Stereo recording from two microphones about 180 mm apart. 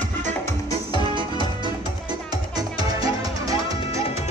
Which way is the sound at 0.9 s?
25° right (ahead or behind).